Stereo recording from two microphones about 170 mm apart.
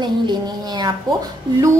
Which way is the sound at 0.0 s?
25° right (ahead or behind).